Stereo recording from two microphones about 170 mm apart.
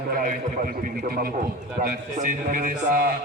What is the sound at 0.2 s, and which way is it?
Speech, 50° right (ahead or behind).